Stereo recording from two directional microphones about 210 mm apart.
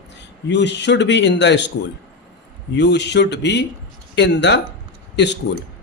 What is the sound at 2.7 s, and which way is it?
Speech, 55° left (ahead or behind).